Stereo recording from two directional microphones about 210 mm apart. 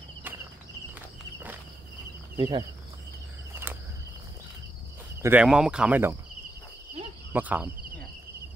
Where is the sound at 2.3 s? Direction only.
20° right (ahead or behind).